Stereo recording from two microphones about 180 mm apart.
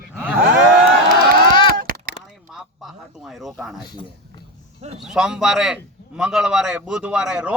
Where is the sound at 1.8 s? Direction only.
55° right (ahead or behind).